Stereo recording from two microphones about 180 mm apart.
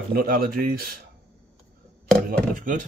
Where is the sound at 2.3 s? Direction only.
50° right (ahead or behind).